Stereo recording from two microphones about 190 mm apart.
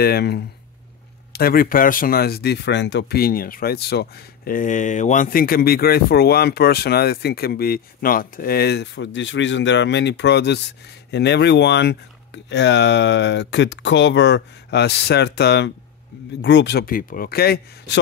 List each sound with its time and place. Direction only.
0.0 s speech: 55° left (ahead or behind)